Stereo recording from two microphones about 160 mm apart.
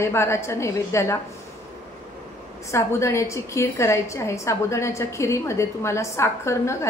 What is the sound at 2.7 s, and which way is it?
A woman's voice, 20° left (ahead or behind).